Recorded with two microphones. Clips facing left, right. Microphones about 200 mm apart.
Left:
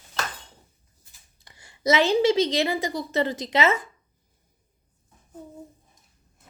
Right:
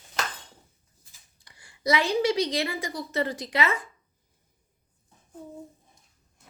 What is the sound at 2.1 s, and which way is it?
A woman's voice, 25° left (ahead or behind).